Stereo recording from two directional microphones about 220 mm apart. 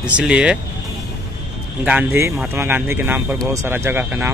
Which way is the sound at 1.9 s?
10° right (ahead or behind).